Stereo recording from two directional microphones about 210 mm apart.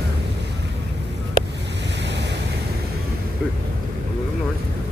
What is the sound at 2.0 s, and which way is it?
Waves, 55° right (ahead or behind).